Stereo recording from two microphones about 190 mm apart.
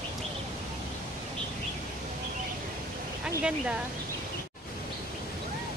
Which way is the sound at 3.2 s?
5° right (ahead or behind).